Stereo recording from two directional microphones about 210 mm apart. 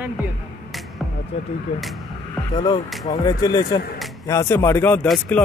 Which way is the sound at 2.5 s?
20° left (ahead or behind).